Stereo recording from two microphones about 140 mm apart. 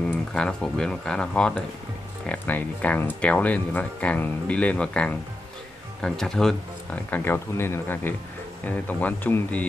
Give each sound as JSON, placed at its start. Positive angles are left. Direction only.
{"t": 0.3, "sound": "speech", "side_deg": 5}
{"t": 7.1, "sound": "speech", "side_deg": 15}